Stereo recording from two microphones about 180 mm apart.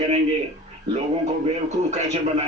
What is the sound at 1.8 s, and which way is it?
Speech, 40° right (ahead or behind).